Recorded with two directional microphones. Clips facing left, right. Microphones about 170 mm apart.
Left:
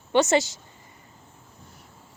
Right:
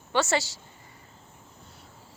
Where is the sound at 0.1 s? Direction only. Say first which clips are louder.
Left 6 dB; 20° left (ahead or behind).